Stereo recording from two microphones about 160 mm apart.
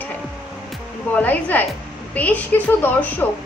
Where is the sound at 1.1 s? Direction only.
10° left (ahead or behind).